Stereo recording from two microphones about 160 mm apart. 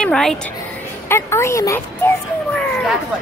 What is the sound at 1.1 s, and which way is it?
A woman's voice, 15° left (ahead or behind).